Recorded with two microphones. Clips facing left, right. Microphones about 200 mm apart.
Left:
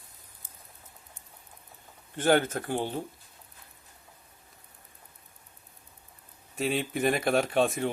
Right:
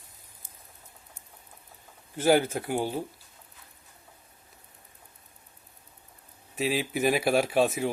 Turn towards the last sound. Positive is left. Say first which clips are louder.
# right 1 dB
turn(degrees=-5)  # may be behind; listen again after turning